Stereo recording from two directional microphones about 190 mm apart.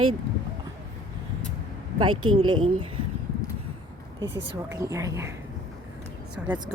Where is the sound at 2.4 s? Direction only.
25° right (ahead or behind).